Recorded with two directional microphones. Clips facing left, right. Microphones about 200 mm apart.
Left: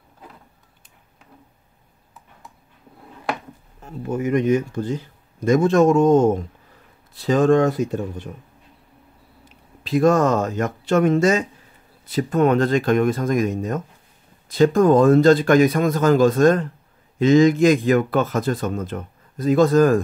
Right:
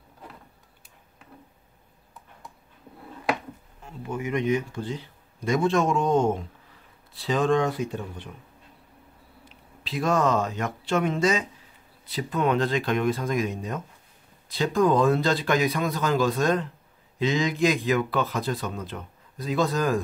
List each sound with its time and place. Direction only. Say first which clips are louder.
3.8 s speech: left 7 dB; 45° left (ahead or behind)
9.8 s speech: left 7 dB; 45° left (ahead or behind)